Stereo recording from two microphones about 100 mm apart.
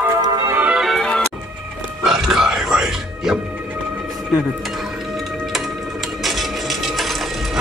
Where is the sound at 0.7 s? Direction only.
Centre (ahead or behind).